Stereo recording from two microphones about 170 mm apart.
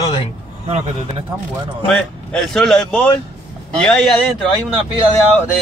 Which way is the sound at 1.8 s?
Centre (ahead or behind).